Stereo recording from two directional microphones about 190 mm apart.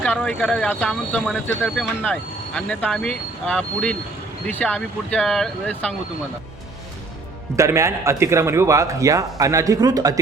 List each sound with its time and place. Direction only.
0.0 s speech: 5° left (ahead or behind)
7.5 s a man's voice: 15° right (ahead or behind)